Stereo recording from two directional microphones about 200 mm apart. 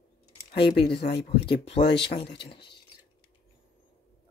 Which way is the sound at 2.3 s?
25° left (ahead or behind).